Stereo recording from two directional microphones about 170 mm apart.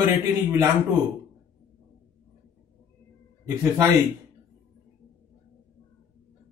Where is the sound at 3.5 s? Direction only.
15° right (ahead or behind).